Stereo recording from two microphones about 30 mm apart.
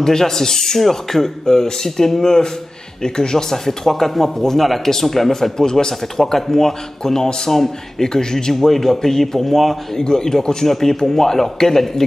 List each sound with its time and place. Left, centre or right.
0.0 s a man's voice: centre
3.5 s speech: centre
8.1 s a man's voice: left
8.5 s a man's voice: centre